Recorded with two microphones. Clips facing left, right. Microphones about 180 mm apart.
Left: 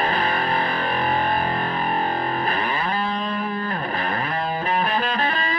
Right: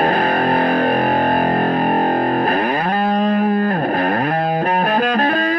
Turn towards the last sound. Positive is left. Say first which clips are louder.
# right 8 dB
turn(degrees=-50)  # may be behind; listen again after turning